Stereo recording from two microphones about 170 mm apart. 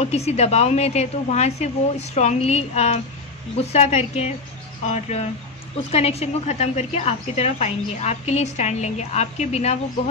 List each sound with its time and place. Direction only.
0.0 s a woman's voice: 40° left (ahead or behind)